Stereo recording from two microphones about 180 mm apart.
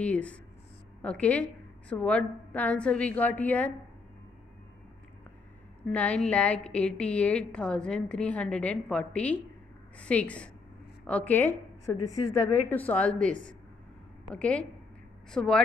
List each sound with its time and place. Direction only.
0.0 s a woman's voice: 5° left (ahead or behind)
5.9 s a woman's voice: 5° left (ahead or behind)